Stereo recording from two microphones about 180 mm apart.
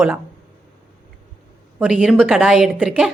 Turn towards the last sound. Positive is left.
turn(degrees=-5)  # may be behind; listen again after turning